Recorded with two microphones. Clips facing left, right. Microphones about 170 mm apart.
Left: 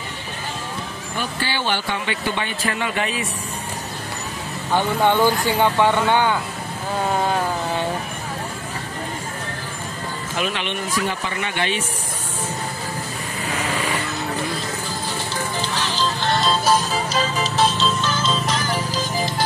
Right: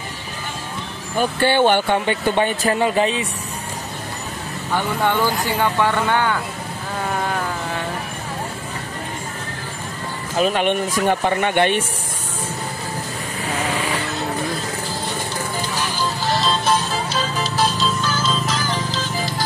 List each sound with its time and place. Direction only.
1.1 s speech: 55° right (ahead or behind); by 3.3 s 30° right (ahead or behind)
4.7 s speech: 20° left (ahead or behind)
10.3 s speech: 35° right (ahead or behind)
10.6 s speech: 50° right (ahead or behind)
15.7 s music: 10° right (ahead or behind); by 17.3 s 10° left (ahead or behind)
18.7 s music: 10° left (ahead or behind)